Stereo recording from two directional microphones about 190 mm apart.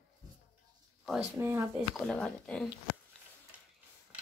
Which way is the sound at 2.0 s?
5° left (ahead or behind).